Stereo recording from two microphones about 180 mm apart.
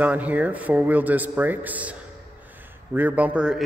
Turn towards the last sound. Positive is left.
turn(degrees=-5)  # may be behind; listen again after turning